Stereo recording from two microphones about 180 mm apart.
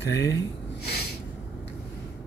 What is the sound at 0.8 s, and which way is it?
Snort, 60° left (ahead or behind).